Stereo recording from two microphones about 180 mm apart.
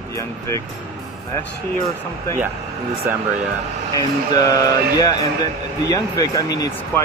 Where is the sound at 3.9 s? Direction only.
20° left (ahead or behind).